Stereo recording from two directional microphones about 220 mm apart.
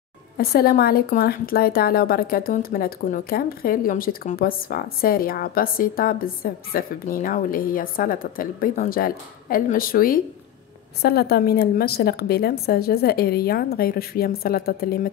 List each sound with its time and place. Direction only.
0.4 s a woman's voice: 45° left (ahead or behind)